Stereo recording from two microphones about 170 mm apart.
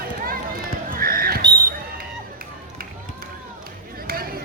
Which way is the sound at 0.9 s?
60° right (ahead or behind).